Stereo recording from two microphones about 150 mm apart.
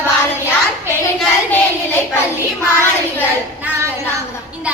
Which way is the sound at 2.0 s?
15° left (ahead or behind).